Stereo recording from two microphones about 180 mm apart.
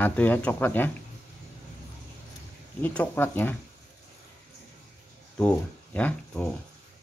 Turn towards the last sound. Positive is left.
turn(degrees=10)  # may be behind; listen again after turning